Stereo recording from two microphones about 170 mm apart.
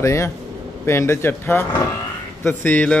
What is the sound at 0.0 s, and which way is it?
A man's voice, 15° left (ahead or behind).